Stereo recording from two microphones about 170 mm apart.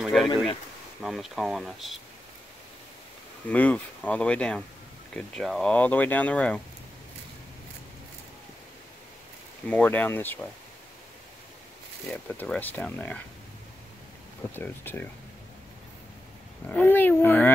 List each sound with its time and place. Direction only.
0.0 s a sound: centre (ahead or behind)
1.0 s speech: centre (ahead or behind)
3.4 s speech: 10° left (ahead or behind)
9.7 s speech: 10° left (ahead or behind)
12.1 s speech: 5° left (ahead or behind)
14.5 s speech: 10° left (ahead or behind)
16.6 s speech: 10° left (ahead or behind)